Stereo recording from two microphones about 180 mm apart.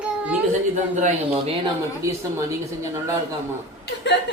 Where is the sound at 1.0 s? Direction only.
35° right (ahead or behind).